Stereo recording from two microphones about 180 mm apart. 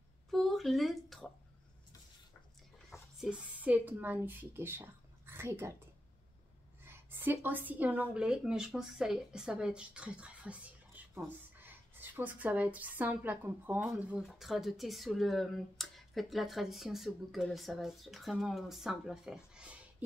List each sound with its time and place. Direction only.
0.3 s a sound: centre (ahead or behind)
3.2 s speech: 5° right (ahead or behind)
6.8 s speech: 10° right (ahead or behind)